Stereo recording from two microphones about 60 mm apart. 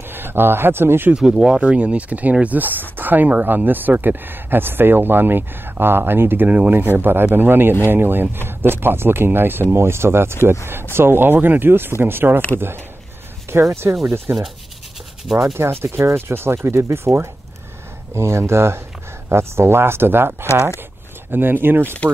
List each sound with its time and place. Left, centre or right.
0.1 s a man's voice: right
1.1 s speech: centre
1.6 s speech: right
13.5 s speech: right
15.5 s speech: right